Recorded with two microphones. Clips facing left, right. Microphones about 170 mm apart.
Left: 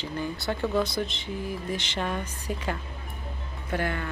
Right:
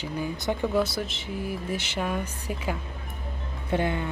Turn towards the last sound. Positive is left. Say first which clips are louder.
# right 3 dB
turn(degrees=-20)  # may be behind; listen again after turning